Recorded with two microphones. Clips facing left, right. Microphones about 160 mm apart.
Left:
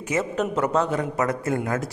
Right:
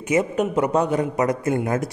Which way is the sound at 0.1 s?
15° right (ahead or behind).